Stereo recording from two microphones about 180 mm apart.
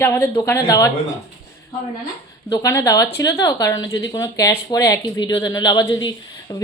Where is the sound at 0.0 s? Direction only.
15° left (ahead or behind).